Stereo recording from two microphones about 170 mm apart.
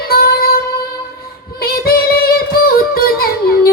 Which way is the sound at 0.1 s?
65° left (ahead or behind).